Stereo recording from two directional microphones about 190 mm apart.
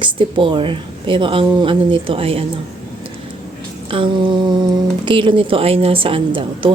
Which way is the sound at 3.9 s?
25° right (ahead or behind).